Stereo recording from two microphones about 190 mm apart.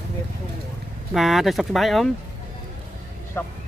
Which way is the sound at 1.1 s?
Centre (ahead or behind).